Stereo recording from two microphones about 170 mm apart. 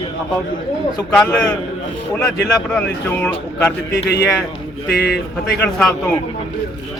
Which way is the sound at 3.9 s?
75° left (ahead or behind).